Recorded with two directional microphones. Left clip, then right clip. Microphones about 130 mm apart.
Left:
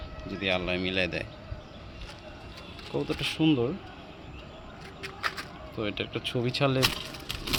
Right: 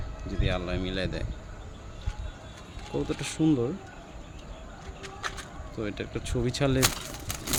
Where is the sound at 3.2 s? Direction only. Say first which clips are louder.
Left 1 dB; 30° right (ahead or behind).